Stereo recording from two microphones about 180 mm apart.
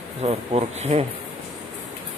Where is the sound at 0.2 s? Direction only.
35° right (ahead or behind).